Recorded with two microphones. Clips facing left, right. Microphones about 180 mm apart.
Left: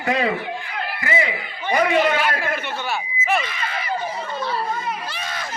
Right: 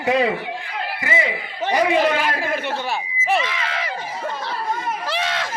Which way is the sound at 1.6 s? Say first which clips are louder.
Right 1 dB; 90° right.